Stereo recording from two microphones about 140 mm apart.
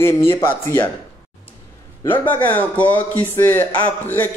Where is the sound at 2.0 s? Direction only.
15° left (ahead or behind).